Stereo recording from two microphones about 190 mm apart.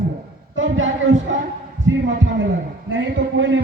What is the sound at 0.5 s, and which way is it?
Speech, 85° right.